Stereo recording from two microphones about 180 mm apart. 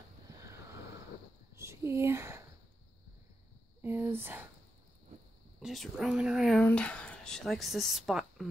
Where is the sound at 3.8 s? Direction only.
10° right (ahead or behind).